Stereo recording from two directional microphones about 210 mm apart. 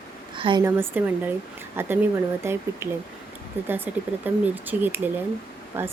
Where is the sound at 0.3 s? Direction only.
25° right (ahead or behind).